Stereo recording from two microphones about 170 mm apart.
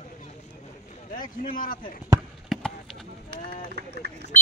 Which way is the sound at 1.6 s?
55° left (ahead or behind).